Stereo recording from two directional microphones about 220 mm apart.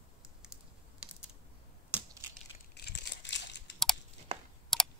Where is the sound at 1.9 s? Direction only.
10° right (ahead or behind).